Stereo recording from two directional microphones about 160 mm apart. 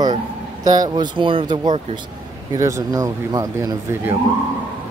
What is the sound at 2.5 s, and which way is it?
Speech, 20° right (ahead or behind).